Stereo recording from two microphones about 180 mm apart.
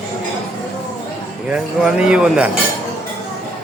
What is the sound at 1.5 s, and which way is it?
Speech, 5° right (ahead or behind).